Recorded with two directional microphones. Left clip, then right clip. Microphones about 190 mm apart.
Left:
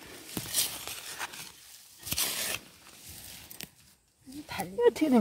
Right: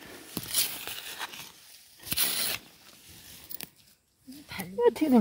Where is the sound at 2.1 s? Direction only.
10° right (ahead or behind).